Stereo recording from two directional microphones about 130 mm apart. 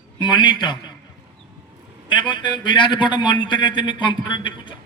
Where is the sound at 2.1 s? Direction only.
40° left (ahead or behind).